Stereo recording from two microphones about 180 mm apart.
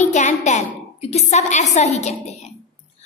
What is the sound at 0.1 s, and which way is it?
Speech, 40° left (ahead or behind).